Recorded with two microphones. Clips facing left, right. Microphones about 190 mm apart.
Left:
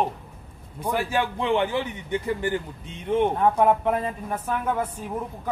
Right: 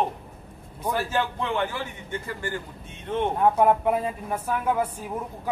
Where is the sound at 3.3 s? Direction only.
5° right (ahead or behind).